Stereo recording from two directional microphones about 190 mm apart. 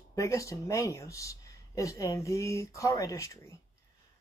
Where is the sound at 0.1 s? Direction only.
15° left (ahead or behind).